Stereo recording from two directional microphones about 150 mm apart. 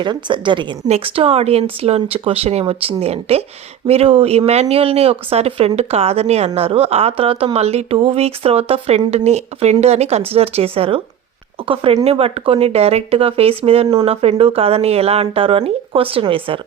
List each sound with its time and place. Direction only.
0.0 s a woman's voice: 30° right (ahead or behind)